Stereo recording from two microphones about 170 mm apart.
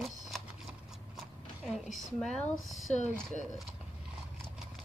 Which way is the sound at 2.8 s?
45° left (ahead or behind).